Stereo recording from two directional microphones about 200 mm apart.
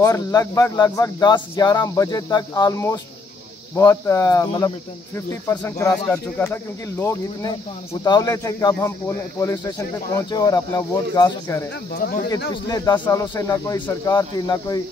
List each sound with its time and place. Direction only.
0.0 s speech: 15° left (ahead or behind)
11.9 s speech: 45° left (ahead or behind)
12.6 s speech: 20° left (ahead or behind)